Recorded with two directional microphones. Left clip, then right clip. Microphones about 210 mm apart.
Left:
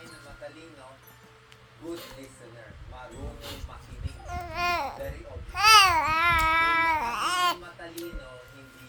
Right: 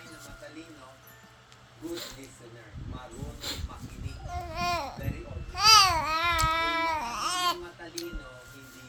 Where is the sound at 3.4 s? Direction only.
25° right (ahead or behind).